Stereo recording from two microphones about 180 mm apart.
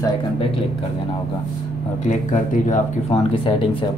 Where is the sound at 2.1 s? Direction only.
45° left (ahead or behind).